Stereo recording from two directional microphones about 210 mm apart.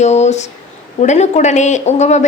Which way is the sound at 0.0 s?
30° left (ahead or behind).